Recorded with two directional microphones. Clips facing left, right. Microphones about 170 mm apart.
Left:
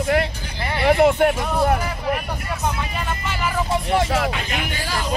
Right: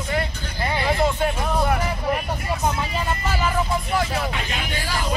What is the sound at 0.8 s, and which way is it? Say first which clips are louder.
Speech: left 8 dB; 65° left (ahead or behind).